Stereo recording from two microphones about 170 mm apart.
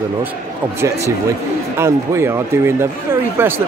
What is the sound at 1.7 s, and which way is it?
Speech, 15° right (ahead or behind).